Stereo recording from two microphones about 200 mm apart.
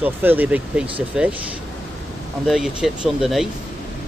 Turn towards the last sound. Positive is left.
turn(degrees=0)  # may be behind; listen again after turning